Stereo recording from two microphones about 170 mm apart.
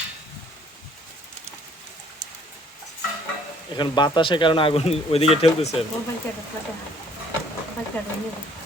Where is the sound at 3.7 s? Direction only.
25° left (ahead or behind).